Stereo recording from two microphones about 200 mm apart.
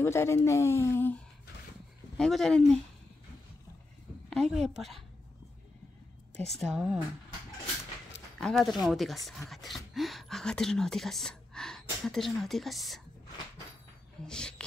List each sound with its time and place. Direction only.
0.0 s speech: 15° left (ahead or behind)
4.3 s speech: centre (ahead or behind)
6.3 s speech: centre (ahead or behind)
8.4 s speech: centre (ahead or behind)
14.2 s speech: 5° left (ahead or behind)